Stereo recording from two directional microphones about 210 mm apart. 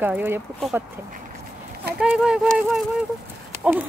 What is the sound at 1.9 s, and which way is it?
Speech, 5° right (ahead or behind).